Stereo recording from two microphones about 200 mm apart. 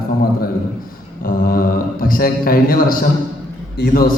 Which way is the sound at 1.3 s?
45° left (ahead or behind).